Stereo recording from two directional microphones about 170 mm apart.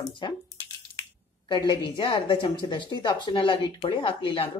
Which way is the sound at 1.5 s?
25° left (ahead or behind).